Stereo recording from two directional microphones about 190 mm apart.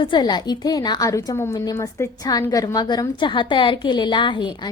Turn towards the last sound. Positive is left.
turn(degrees=25)  # may be behind; listen again after turning